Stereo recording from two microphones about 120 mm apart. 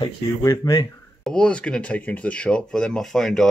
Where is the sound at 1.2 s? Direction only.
5° left (ahead or behind).